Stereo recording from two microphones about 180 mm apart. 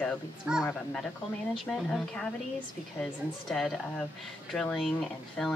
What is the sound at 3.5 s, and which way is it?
Speech, centre (ahead or behind).